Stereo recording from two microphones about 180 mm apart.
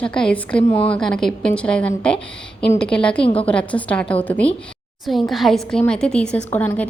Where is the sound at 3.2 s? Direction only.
30° left (ahead or behind).